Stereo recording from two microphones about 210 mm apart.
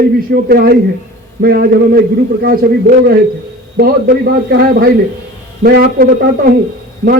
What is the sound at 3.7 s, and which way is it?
A man's voice, 45° right (ahead or behind).